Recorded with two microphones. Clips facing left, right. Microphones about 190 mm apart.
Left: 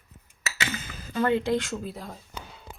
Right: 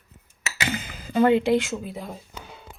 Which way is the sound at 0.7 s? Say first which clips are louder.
Right 6 dB; 15° right (ahead or behind).